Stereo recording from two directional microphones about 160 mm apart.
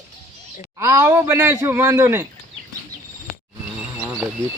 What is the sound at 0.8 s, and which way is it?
Speech, 20° right (ahead or behind).